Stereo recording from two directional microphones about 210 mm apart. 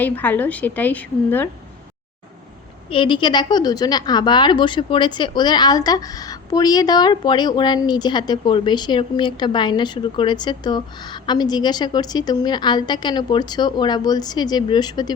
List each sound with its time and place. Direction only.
0.0 s a woman's voice: 10° left (ahead or behind)
2.9 s a woman's voice: 25° left (ahead or behind)